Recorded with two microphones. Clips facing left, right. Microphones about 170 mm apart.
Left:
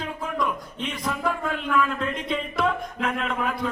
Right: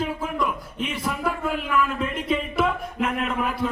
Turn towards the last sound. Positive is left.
turn(degrees=-5)  # may be behind; listen again after turning